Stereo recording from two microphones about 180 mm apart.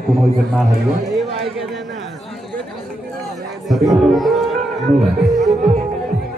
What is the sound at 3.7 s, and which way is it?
Speech, centre (ahead or behind).